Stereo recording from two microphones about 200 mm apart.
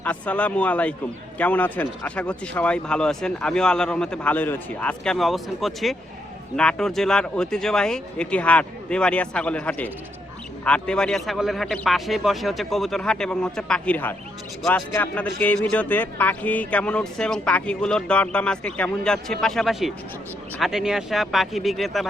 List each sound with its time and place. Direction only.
0.0 s a man's voice: 5° left (ahead or behind)